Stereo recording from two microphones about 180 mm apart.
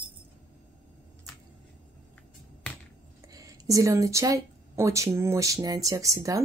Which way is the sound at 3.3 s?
20° right (ahead or behind).